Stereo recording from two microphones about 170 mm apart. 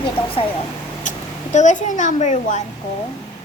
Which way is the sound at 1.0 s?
45° left (ahead or behind).